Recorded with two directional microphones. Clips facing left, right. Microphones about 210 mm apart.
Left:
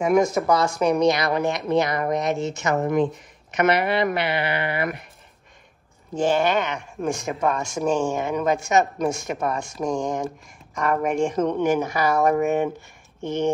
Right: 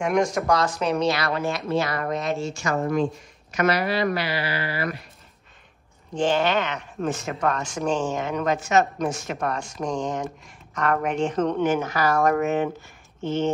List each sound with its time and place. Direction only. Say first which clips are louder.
0.0 s speech: left 3 dB; 5° left (ahead or behind); by 4.9 s 20° left (ahead or behind)
6.1 s speech: left 1 dB; 10° left (ahead or behind)